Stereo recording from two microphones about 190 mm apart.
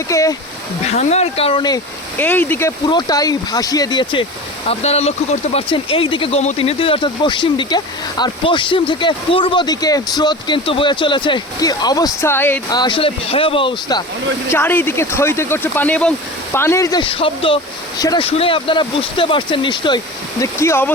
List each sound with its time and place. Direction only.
0.1 s speech: 15° left (ahead or behind)
0.9 s speech: 35° left (ahead or behind)
2.1 s speech: 10° left (ahead or behind)
12.8 s speech: 25° left (ahead or behind)
14.5 s speech: 10° left (ahead or behind)
17.0 s speech: 30° left (ahead or behind)
20.4 s speech: 15° left (ahead or behind)